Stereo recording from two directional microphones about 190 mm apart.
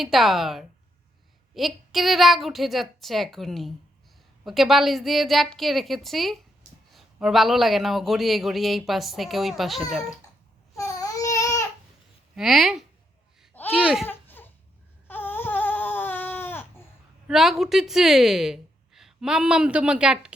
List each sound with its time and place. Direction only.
0.0 s a man's voice: centre (ahead or behind)
10.8 s babbling: 20° left (ahead or behind)
12.4 s a man's voice: centre (ahead or behind)
14.1 s a sound: 10° left (ahead or behind)
15.0 s baby cry: 10° left (ahead or behind)
17.2 s a woman's voice: centre (ahead or behind)